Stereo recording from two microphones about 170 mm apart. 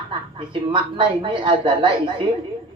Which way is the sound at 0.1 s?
30° right (ahead or behind).